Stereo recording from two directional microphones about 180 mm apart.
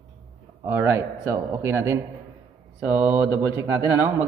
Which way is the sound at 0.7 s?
10° right (ahead or behind).